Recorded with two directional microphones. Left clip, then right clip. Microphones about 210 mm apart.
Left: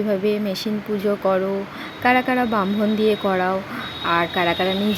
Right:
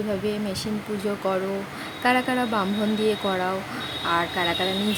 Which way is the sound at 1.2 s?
15° left (ahead or behind).